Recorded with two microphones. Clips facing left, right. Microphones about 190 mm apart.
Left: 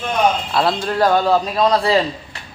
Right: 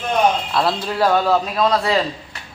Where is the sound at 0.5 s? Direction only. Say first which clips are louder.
Left 2 dB; centre (ahead or behind).